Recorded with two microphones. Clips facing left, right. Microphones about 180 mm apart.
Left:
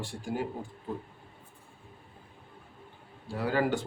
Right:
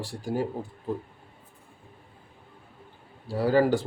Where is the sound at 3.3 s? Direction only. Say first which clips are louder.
Right 6 dB; 35° right (ahead or behind).